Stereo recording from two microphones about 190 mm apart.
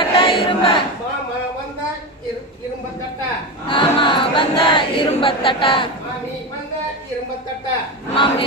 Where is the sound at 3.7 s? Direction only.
25° left (ahead or behind).